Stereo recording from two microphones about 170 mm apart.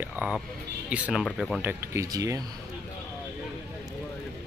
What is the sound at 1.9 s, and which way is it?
Speech, 20° right (ahead or behind).